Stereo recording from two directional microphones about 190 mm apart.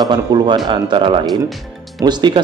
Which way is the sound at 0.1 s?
25° right (ahead or behind).